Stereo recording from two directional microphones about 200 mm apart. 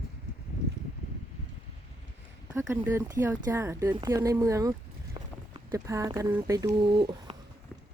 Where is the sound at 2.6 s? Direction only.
15° right (ahead or behind).